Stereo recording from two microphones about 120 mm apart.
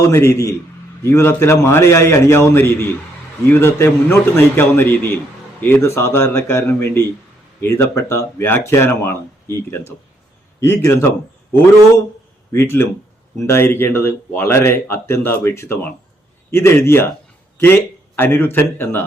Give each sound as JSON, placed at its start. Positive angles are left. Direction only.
{"t": 0.0, "sound": "a man's voice", "side_deg": 25}
{"t": 12.5, "sound": "a man's voice", "side_deg": 20}
{"t": 18.2, "sound": "a man's voice", "side_deg": 20}